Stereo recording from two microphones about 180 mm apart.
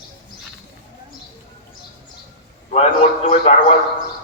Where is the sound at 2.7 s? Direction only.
40° left (ahead or behind).